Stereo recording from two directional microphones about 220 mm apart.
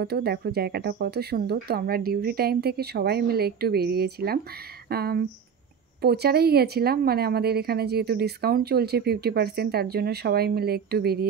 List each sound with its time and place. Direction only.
0.0 s a woman's voice: 45° right (ahead or behind)